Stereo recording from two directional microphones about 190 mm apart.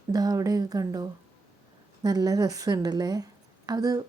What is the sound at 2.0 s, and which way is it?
A woman's voice, 20° right (ahead or behind).